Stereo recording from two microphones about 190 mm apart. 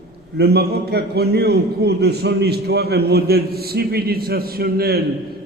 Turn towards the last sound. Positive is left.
turn(degrees=-55)  # may be behind; listen again after turning